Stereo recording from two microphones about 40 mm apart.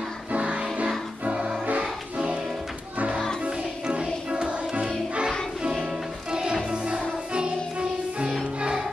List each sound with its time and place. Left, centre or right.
0.3 s music: right
4.0 s music: right
6.3 s music: centre